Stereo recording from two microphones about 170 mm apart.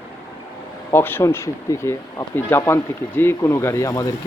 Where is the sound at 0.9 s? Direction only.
15° left (ahead or behind).